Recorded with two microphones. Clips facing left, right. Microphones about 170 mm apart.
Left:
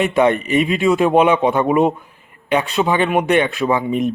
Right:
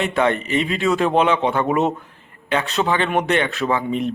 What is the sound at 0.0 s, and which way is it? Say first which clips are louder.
Speech: left 4 dB; 15° left (ahead or behind).